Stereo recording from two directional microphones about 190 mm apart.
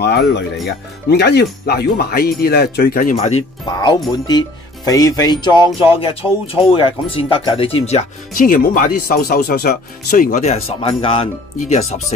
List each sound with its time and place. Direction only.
0.0 s speech: 60° left (ahead or behind); by 3.4 s 35° left (ahead or behind)
3.6 s music: 20° left (ahead or behind)
4.3 s speech: 20° left (ahead or behind)